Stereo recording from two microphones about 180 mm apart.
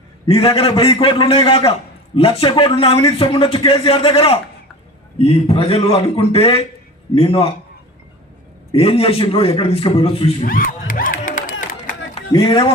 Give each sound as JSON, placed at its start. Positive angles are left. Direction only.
{"t": 0.3, "sound": "a man's voice", "side_deg": 30}
{"t": 8.7, "sound": "a man's voice", "side_deg": 35}
{"t": 10.4, "sound": "music", "side_deg": 50}
{"t": 12.3, "sound": "speech", "side_deg": 20}